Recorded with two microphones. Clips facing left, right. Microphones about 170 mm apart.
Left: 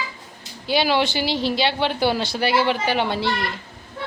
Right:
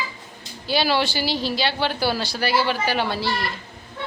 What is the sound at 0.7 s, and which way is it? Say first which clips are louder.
Speech: left 2 dB; 20° left (ahead or behind).